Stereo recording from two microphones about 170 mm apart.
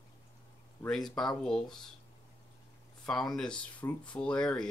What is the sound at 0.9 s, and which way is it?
Speech, centre (ahead or behind).